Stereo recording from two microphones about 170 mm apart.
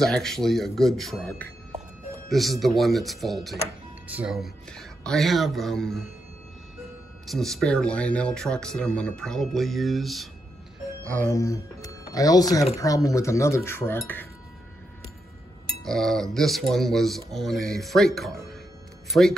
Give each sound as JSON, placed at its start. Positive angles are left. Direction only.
{"t": 0.0, "sound": "speech", "side_deg": 5}
{"t": 7.2, "sound": "speech", "side_deg": 0}
{"t": 11.1, "sound": "speech", "side_deg": 10}
{"t": 15.8, "sound": "speech", "side_deg": 5}